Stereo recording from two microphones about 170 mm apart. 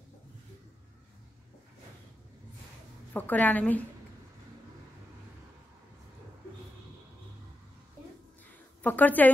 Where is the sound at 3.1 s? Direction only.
10° left (ahead or behind).